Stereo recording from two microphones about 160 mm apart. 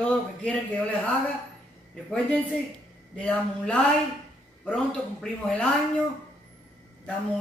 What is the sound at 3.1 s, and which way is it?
A man's voice, 5° left (ahead or behind).